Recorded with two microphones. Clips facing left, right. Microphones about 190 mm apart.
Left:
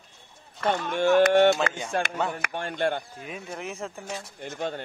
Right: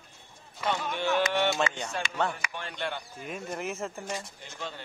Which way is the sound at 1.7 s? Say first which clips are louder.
Left 5 dB; 60° left (ahead or behind).